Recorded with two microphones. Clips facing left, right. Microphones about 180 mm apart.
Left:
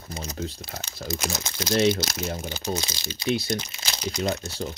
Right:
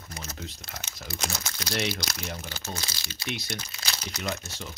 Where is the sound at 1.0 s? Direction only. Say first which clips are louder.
Left 5 dB; 20° left (ahead or behind).